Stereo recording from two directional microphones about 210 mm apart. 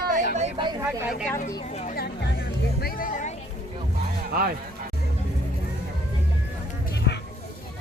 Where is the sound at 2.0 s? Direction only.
45° left (ahead or behind).